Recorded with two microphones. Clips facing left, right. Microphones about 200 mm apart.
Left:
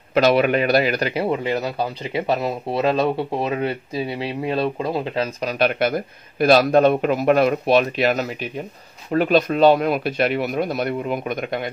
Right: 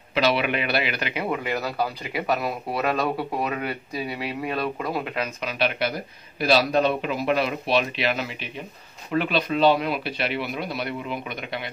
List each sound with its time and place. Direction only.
0.1 s speech: 45° left (ahead or behind)